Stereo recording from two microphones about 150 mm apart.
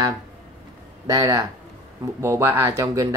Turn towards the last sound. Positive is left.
turn(degrees=-20)  # may be behind; listen again after turning